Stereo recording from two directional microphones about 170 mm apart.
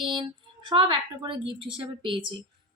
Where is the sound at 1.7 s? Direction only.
30° right (ahead or behind).